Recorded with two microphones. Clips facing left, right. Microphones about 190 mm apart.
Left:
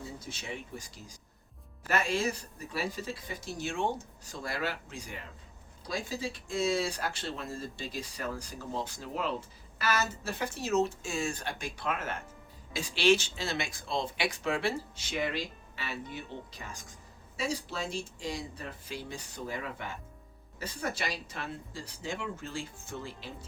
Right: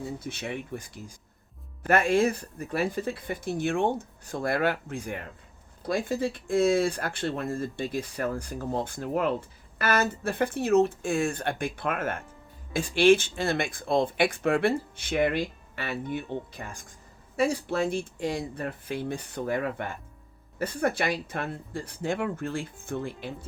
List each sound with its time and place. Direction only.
0.2 s speech: 60° right (ahead or behind)